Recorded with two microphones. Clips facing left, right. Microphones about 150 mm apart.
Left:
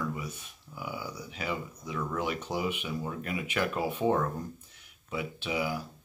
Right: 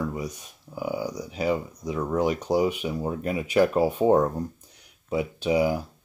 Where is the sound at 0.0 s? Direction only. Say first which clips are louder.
Right 5 dB; 35° right (ahead or behind).